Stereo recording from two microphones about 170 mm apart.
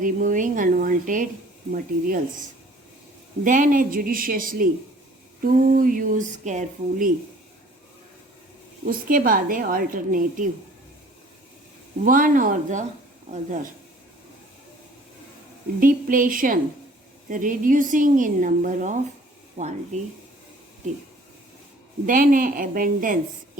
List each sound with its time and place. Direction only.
0.0 s a woman's voice: 50° right (ahead or behind)
3.4 s a woman's voice: 50° right (ahead or behind)
8.9 s a woman's voice: 55° right (ahead or behind)
12.0 s speech: 55° right (ahead or behind)
15.8 s a woman's voice: 55° right (ahead or behind)
22.0 s a woman's voice: 55° right (ahead or behind)